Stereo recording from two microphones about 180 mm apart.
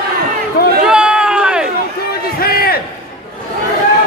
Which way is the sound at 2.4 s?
60° left (ahead or behind).